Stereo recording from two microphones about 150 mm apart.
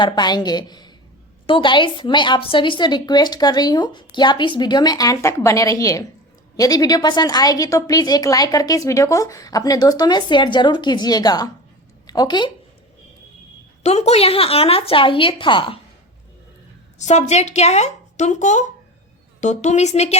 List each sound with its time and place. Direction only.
0.0 s a woman's voice: 30° left (ahead or behind)
13.8 s a woman's voice: 45° left (ahead or behind)
17.0 s speech: 50° left (ahead or behind)